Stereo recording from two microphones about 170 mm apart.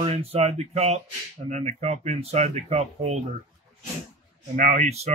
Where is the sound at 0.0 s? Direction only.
35° right (ahead or behind).